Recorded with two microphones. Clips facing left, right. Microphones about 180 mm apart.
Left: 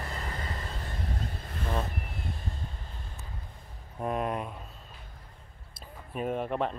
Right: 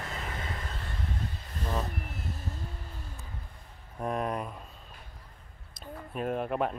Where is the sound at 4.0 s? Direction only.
Centre (ahead or behind).